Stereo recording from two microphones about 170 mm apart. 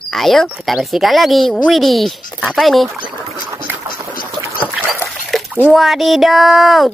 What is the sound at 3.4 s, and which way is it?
Boat, 15° right (ahead or behind).